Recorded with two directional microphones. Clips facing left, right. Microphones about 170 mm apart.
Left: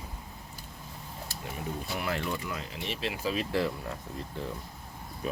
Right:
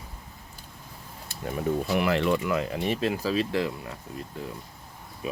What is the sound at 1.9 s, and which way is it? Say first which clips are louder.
Speech: right 8 dB; 90° right.